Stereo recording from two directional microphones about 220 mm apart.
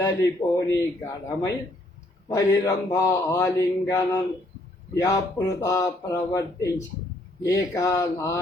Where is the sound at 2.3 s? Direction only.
15° left (ahead or behind).